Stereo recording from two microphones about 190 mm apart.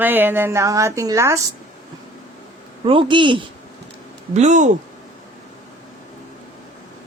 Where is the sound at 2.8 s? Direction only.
25° right (ahead or behind).